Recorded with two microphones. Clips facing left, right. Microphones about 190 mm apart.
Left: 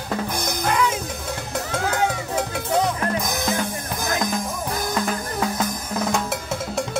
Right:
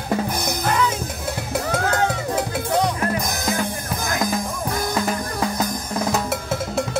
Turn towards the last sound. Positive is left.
turn(degrees=0)  # may be behind; listen again after turning